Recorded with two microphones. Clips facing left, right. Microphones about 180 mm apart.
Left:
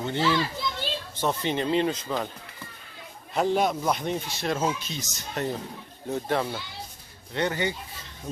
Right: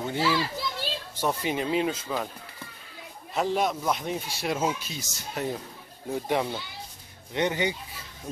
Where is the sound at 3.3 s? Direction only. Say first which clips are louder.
Left 2 dB; centre (ahead or behind); by 7.8 s 15° right (ahead or behind).